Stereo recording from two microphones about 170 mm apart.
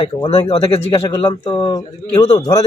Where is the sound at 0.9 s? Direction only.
25° left (ahead or behind).